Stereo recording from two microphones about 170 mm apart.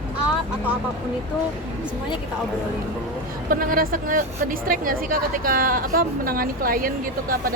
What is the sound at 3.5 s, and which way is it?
A woman's voice, 55° right (ahead or behind).